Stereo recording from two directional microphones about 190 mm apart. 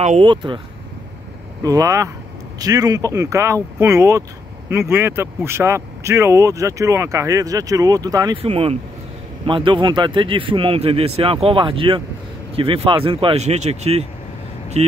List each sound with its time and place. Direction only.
0.0 s speech: 35° right (ahead or behind)
0.3 s speech: 25° right (ahead or behind)
1.6 s speech: 20° right (ahead or behind)
8.4 s speech: 30° right (ahead or behind)